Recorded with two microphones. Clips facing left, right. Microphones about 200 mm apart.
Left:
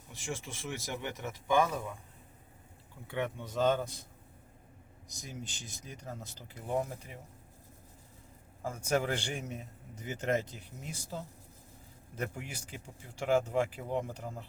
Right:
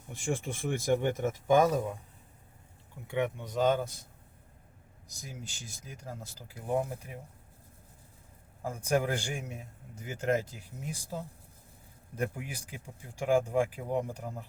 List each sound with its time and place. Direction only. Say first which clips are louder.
0.1 s speech: right 7 dB; 55° right (ahead or behind)
3.1 s a man's voice: right 4 dB; 15° right (ahead or behind)
5.2 s a man's voice: left 1 dB; 5° right (ahead or behind)
8.6 s a man's voice: right 2 dB; 15° right (ahead or behind)
12.2 s a man's voice: right 4 dB; 10° right (ahead or behind)